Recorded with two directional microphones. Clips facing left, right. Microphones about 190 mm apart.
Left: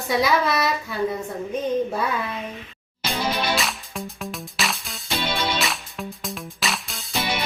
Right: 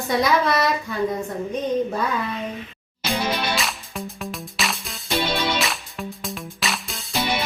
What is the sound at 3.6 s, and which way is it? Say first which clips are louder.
Music: even; centre (ahead or behind).